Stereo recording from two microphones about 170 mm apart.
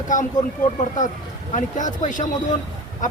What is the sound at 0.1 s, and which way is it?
Speech, 50° left (ahead or behind).